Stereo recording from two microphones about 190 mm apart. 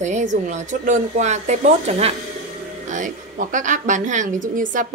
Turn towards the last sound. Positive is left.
turn(degrees=-45)  # may be behind; listen again after turning